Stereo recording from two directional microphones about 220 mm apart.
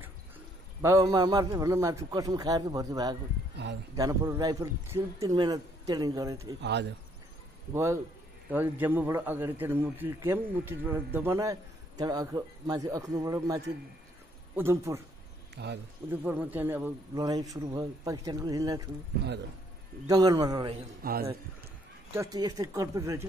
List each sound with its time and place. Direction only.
0.8 s a man's voice: 15° right (ahead or behind)
3.6 s speech: 50° right (ahead or behind)
3.9 s a man's voice: 15° right (ahead or behind)
6.6 s speech: 50° right (ahead or behind)
7.7 s a man's voice: 10° right (ahead or behind)
15.5 s speech: 50° right (ahead or behind)
16.1 s a man's voice: 10° right (ahead or behind)
20.1 s a man's voice: 15° right (ahead or behind)
21.0 s speech: 45° right (ahead or behind)
22.1 s a man's voice: 15° right (ahead or behind)